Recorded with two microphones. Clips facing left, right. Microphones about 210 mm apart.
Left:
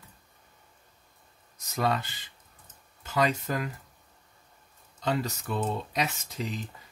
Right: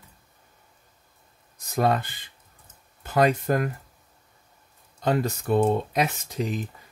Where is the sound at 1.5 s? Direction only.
55° right (ahead or behind).